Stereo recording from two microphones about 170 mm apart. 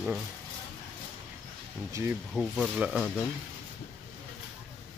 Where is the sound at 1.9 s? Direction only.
20° right (ahead or behind).